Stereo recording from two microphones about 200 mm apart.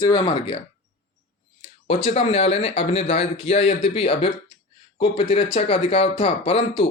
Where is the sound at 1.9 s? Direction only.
30° left (ahead or behind).